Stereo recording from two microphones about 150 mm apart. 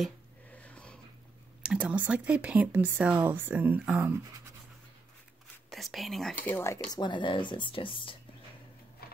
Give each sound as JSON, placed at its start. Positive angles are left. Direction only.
{"t": 0.6, "sound": "a sound", "side_deg": 5}
{"t": 1.6, "sound": "speech", "side_deg": -10}
{"t": 5.7, "sound": "speech", "side_deg": 0}
{"t": 6.4, "sound": "speech", "side_deg": 15}